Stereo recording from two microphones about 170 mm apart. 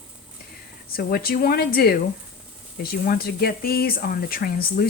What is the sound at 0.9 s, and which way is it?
Speech, 60° left (ahead or behind).